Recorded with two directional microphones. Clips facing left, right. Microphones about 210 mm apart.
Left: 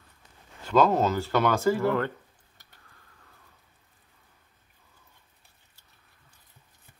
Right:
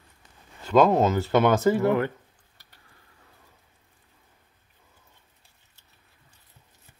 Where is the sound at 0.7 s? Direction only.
5° right (ahead or behind).